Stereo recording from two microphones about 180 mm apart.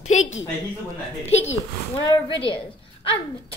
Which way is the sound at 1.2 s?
35° left (ahead or behind).